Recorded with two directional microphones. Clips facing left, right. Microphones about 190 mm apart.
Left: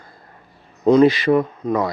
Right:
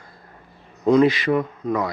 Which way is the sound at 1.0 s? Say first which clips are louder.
Left 4 dB; 30° left (ahead or behind).